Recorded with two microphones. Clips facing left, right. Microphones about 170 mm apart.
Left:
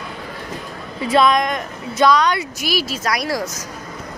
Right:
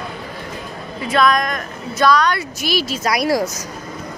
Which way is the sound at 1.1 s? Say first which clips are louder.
Left 1 dB; 25° left (ahead or behind).